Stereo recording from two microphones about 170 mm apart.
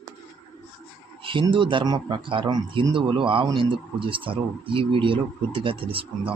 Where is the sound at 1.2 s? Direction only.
30° right (ahead or behind).